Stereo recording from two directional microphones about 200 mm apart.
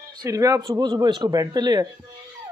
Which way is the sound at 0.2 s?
15° right (ahead or behind).